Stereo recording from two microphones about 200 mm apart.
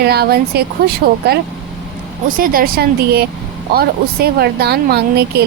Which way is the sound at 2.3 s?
45° right (ahead or behind).